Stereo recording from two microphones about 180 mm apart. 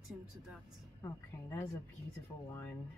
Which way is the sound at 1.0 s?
20° left (ahead or behind).